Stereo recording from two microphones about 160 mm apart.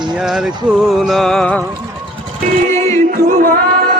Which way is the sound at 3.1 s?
65° right (ahead or behind).